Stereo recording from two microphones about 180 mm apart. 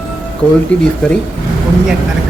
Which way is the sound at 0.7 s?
5° left (ahead or behind).